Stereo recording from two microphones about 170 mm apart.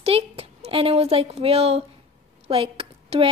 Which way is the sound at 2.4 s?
35° right (ahead or behind).